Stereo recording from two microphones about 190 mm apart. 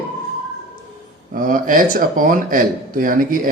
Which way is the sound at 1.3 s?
45° right (ahead or behind).